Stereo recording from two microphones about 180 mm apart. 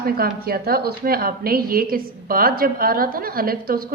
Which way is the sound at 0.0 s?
55° right (ahead or behind).